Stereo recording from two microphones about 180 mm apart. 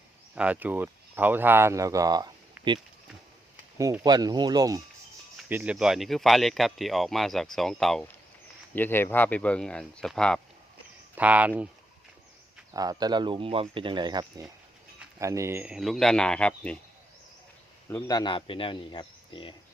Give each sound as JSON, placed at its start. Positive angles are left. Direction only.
{"t": 0.3, "sound": "speech", "side_deg": -10}
{"t": 2.6, "sound": "a sound", "side_deg": -10}
{"t": 3.8, "sound": "speech", "side_deg": -20}
{"t": 5.5, "sound": "speech", "side_deg": -10}
{"t": 11.1, "sound": "speech", "side_deg": -10}
{"t": 12.7, "sound": "speech", "side_deg": -20}
{"t": 17.8, "sound": "speech", "side_deg": 15}